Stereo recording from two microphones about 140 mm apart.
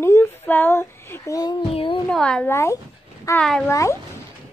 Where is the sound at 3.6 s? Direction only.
20° left (ahead or behind).